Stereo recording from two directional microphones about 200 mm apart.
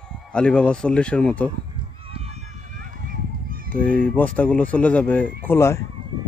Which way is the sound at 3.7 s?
10° left (ahead or behind).